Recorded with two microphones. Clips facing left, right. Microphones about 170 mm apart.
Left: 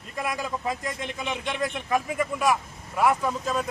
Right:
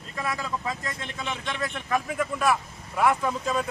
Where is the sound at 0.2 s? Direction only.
15° left (ahead or behind).